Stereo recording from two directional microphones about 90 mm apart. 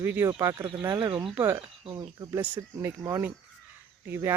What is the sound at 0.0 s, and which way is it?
Speech, 25° right (ahead or behind).